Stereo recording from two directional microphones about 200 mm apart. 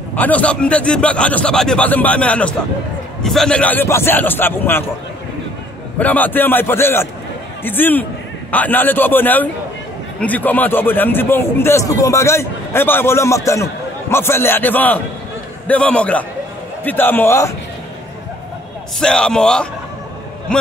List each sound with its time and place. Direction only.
0.1 s a man's voice: 10° left (ahead or behind)
5.9 s a man's voice: 10° left (ahead or behind)
18.9 s a man's voice: 5° left (ahead or behind)